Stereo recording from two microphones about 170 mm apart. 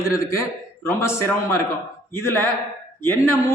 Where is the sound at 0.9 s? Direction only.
15° left (ahead or behind).